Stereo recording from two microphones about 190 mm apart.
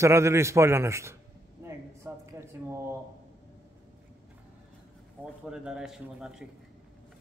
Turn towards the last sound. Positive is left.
turn(degrees=-5)  # may be behind; listen again after turning